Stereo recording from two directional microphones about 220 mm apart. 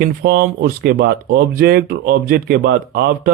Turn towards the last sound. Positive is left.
turn(degrees=-45)  # may be behind; listen again after turning